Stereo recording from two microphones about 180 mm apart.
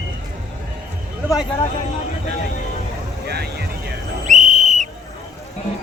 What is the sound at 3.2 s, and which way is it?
Vehicle, 65° right (ahead or behind).